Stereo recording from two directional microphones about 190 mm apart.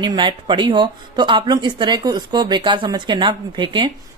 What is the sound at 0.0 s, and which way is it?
Speech, 25° right (ahead or behind).